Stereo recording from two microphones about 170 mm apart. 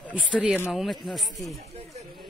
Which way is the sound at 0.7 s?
Centre (ahead or behind).